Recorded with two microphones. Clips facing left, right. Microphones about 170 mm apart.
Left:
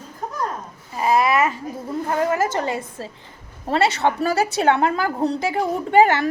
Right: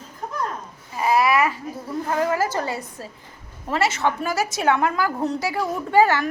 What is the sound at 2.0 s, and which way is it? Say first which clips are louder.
A woman's voice: left 1 dB; 25° left (ahead or behind).